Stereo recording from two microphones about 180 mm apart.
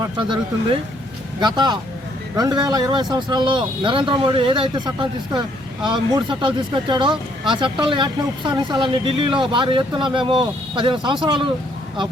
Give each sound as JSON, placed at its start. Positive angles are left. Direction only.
{"t": 0.2, "sound": "speech", "side_deg": -25}